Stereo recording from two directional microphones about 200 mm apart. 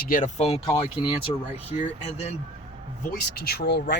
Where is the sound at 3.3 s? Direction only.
50° left (ahead or behind).